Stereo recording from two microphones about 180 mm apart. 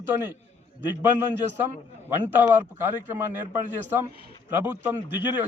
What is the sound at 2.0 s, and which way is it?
A man's voice, 10° right (ahead or behind).